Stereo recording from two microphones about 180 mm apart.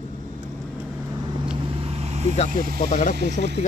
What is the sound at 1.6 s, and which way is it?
Vehicle, 30° right (ahead or behind).